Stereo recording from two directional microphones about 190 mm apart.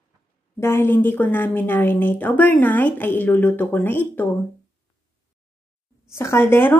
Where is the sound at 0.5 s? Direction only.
15° left (ahead or behind).